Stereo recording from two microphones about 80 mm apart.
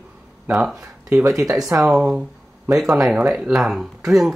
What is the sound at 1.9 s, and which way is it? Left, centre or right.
Speech, centre.